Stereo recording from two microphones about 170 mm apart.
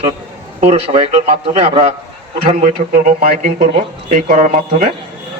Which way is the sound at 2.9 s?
55° right (ahead or behind).